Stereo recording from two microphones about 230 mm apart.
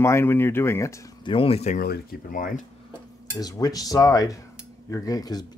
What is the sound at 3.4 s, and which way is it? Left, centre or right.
Speech, centre.